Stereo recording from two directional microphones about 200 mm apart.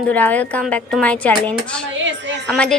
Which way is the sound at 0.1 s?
10° left (ahead or behind).